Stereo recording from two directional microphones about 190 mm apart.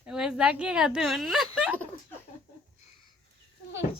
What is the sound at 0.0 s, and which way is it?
A woman's voice, 5° right (ahead or behind).